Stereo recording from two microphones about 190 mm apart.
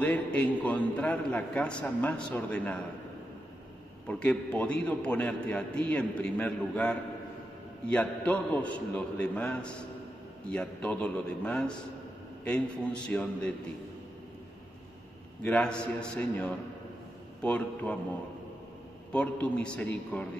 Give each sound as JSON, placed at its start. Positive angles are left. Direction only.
{"t": 0.0, "sound": "a man's voice", "side_deg": 5}
{"t": 4.1, "sound": "a man's voice", "side_deg": 5}
{"t": 15.4, "sound": "a man's voice", "side_deg": 5}
{"t": 19.1, "sound": "a man's voice", "side_deg": 5}